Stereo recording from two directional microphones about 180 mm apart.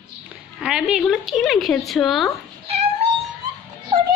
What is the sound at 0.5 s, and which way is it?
Speech, 5° right (ahead or behind).